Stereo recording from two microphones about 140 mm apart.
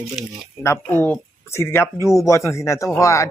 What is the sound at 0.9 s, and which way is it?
A man's voice, 15° left (ahead or behind).